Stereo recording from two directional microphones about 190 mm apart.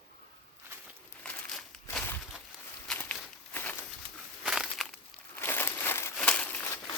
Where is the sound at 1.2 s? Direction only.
5° left (ahead or behind).